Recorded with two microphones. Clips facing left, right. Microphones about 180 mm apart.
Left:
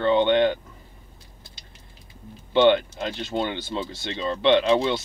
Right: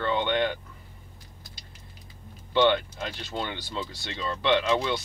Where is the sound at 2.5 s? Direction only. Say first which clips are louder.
Left 5 dB; 25° left (ahead or behind).